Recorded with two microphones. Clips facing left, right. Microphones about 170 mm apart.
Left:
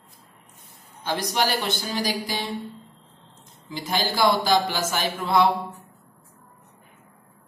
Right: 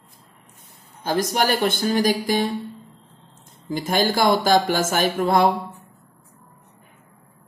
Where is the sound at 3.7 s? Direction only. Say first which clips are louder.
Right 6 dB; 50° right (ahead or behind).